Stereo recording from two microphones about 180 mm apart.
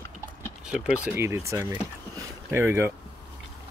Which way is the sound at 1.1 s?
15° right (ahead or behind).